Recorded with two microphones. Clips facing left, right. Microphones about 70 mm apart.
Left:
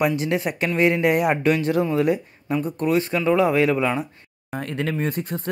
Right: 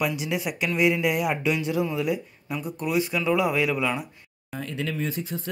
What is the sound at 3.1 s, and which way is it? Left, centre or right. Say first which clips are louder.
Speech: left 5 dB; left.